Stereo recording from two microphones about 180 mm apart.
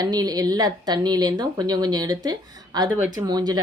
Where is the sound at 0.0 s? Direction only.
20° right (ahead or behind).